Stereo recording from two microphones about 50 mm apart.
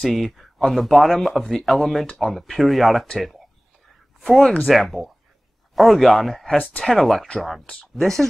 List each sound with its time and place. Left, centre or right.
0.0 s speech: centre
7.6 s speech: left
7.9 s speech: centre